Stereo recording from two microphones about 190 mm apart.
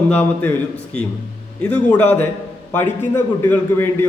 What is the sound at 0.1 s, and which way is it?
Speech, 10° left (ahead or behind).